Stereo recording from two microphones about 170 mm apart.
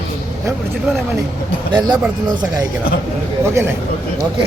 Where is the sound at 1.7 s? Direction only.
25° right (ahead or behind).